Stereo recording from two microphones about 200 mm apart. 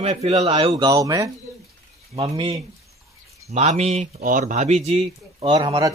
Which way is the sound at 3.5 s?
35° right (ahead or behind).